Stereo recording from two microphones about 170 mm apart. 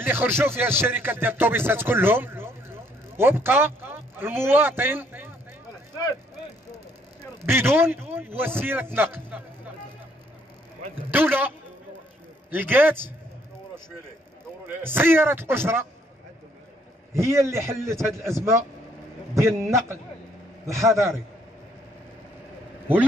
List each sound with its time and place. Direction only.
0.0 s music: 10° right (ahead or behind)
3.2 s a man's voice: 15° right (ahead or behind)
7.4 s music: 10° right (ahead or behind)
11.1 s music: 10° right (ahead or behind)
14.9 s music: 15° right (ahead or behind)
17.1 s music: 15° right (ahead or behind)
20.7 s music: 15° right (ahead or behind)